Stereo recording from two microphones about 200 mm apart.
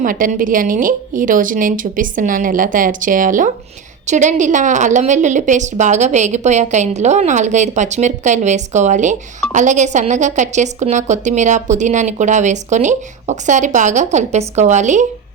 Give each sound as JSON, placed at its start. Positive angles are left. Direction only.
{"t": 0.0, "sound": "speech", "side_deg": -45}